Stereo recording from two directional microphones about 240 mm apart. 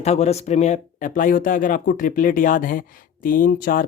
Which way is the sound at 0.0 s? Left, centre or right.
Left.